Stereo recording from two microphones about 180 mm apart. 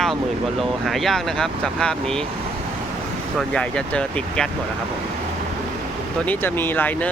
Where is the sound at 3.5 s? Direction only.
5° left (ahead or behind).